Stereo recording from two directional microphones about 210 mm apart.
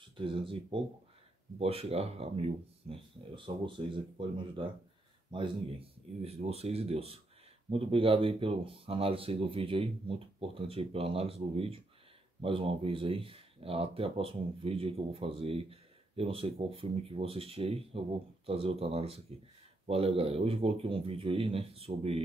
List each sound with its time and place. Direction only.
0.2 s speech: 25° right (ahead or behind)